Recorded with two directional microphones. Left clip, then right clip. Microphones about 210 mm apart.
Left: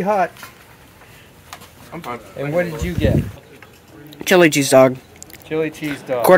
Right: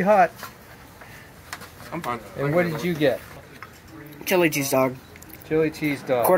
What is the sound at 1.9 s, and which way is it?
Speech, 40° right (ahead or behind).